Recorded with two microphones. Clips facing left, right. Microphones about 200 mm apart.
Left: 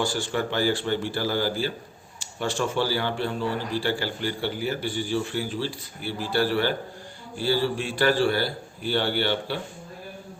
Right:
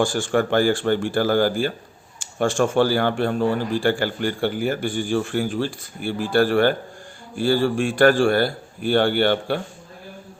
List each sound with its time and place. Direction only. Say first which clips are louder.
0.0 s speech: right 6 dB; 50° right (ahead or behind)